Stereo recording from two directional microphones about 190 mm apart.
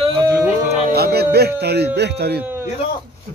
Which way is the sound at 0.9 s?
55° right (ahead or behind).